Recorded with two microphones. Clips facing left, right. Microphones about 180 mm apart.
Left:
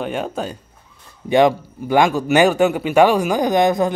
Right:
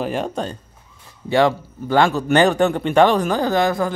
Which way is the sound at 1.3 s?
15° left (ahead or behind).